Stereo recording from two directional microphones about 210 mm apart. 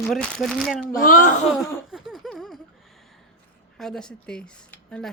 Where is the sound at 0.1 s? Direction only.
Centre (ahead or behind).